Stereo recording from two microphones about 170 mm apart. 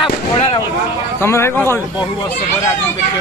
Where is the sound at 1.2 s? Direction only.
15° left (ahead or behind).